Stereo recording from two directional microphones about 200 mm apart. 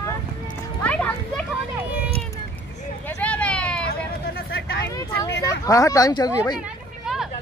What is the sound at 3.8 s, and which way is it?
Vehicle, 50° left (ahead or behind).